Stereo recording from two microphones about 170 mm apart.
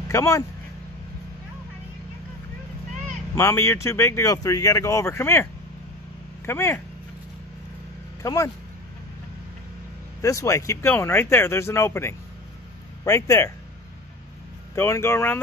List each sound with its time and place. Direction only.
0.1 s speech: 20° left (ahead or behind)
3.3 s speech: 15° left (ahead or behind)
8.2 s speech: 20° left (ahead or behind)
10.2 s speech: 20° left (ahead or behind)
14.8 s speech: 15° left (ahead or behind)